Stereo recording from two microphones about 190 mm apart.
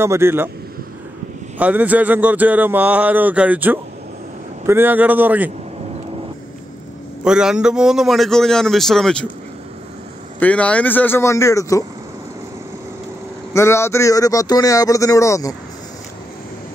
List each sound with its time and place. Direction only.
0.0 s speech: 15° right (ahead or behind)
1.6 s speech: 10° right (ahead or behind)
7.2 s a man's voice: 5° right (ahead or behind)
10.4 s speech: 5° left (ahead or behind)
13.5 s speech: 15° left (ahead or behind)